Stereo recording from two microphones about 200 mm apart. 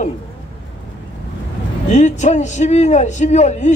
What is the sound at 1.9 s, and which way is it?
Speech, 35° left (ahead or behind).